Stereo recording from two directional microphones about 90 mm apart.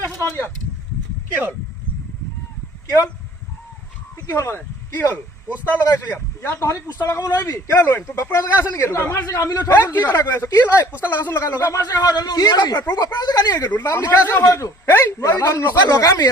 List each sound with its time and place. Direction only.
0.2 s speech: 30° left (ahead or behind)
4.3 s a man's voice: 30° left (ahead or behind)
6.6 s speech: 35° left (ahead or behind)
9.0 s speech: 20° left (ahead or behind)
9.2 s speech: 35° left (ahead or behind)
10.1 s speech: 20° left (ahead or behind)
11.6 s a man's voice: 45° left (ahead or behind)
13.7 s speech: 35° left (ahead or behind)
14.1 s speech: 25° left (ahead or behind)
14.4 s speech: 35° left (ahead or behind)